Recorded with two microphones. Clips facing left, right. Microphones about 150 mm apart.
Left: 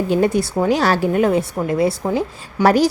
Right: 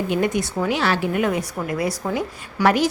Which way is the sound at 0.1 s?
35° left (ahead or behind).